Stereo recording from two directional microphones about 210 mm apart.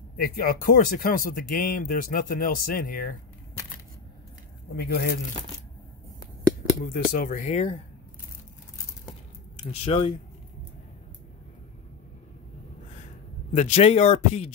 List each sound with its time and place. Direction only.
0.2 s speech: 45° left (ahead or behind)
4.7 s speech: 45° left (ahead or behind)
6.9 s speech: 40° left (ahead or behind)
9.8 s speech: 25° left (ahead or behind)
13.6 s speech: 30° left (ahead or behind)